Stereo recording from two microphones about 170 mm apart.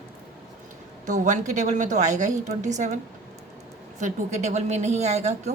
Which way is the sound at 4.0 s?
45° right (ahead or behind).